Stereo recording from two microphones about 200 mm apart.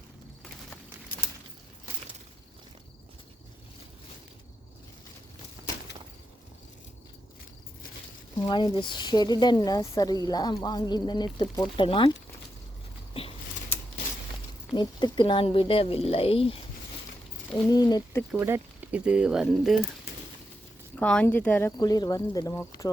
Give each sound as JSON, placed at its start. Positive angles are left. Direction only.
{"t": 8.4, "sound": "speech", "side_deg": 20}
{"t": 14.8, "sound": "speech", "side_deg": 20}
{"t": 17.7, "sound": "speech", "side_deg": 20}
{"t": 18.3, "sound": "speech", "side_deg": -10}
{"t": 20.9, "sound": "speech", "side_deg": 5}
{"t": 21.8, "sound": "speech", "side_deg": 20}